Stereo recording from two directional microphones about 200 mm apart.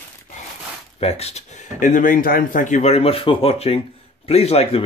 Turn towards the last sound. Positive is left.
turn(degrees=30)  # may be behind; listen again after turning